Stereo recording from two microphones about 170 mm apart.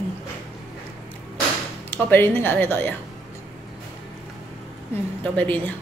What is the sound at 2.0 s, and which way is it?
Speech, 10° left (ahead or behind).